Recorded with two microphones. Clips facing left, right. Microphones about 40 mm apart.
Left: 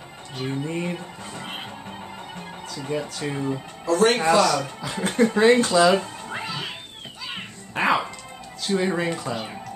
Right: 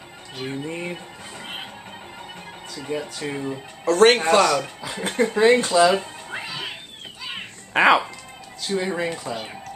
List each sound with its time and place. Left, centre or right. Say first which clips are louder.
0.4 s speech: left 2 dB; centre
2.7 s speech: even; centre
3.8 s speech: right 4 dB; right
4.5 s speech: right 1 dB; centre
7.7 s speech: right 5 dB; right
8.6 s speech: left 1 dB; centre